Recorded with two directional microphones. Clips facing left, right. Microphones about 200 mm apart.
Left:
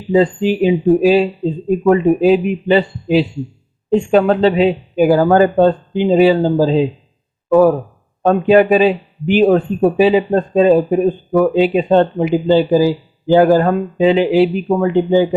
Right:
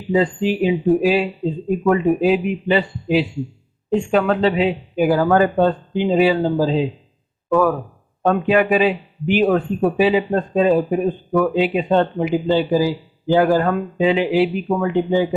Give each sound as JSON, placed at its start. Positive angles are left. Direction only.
{"t": 0.1, "sound": "speech", "side_deg": 35}